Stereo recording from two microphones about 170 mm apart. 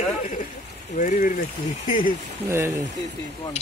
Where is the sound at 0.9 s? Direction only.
50° left (ahead or behind).